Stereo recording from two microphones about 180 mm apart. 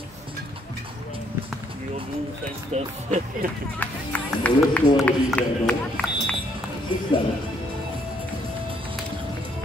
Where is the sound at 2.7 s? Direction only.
40° right (ahead or behind).